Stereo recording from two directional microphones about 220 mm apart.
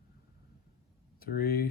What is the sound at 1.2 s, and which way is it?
Speech, 45° left (ahead or behind).